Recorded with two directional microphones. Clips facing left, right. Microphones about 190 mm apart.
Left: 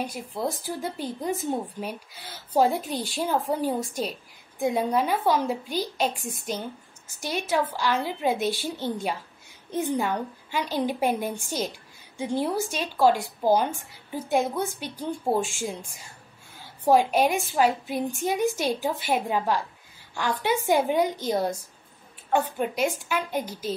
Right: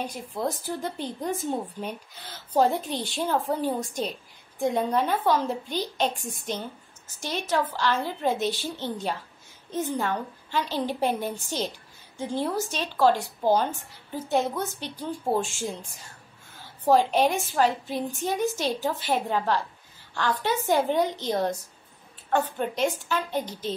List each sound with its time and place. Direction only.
0.0 s a woman's voice: 10° left (ahead or behind)